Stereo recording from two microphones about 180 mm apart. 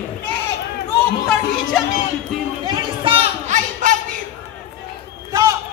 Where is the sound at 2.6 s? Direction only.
30° right (ahead or behind).